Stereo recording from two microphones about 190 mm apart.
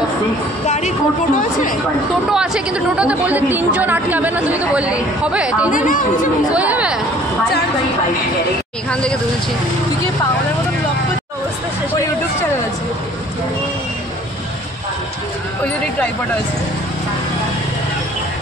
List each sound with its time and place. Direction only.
0.7 s a woman's voice: 40° left (ahead or behind)
2.3 s a woman's voice: 5° right (ahead or behind)
5.7 s a woman's voice: 45° left (ahead or behind)
6.5 s a woman's voice: 5° right (ahead or behind)
8.9 s speech: 5° left (ahead or behind)